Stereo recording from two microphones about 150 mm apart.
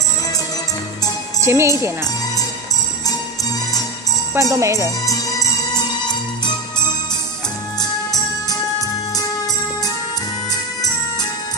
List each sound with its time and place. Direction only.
1.4 s speech: 20° right (ahead or behind)
4.3 s speech: 20° right (ahead or behind)
5.0 s music: 25° left (ahead or behind)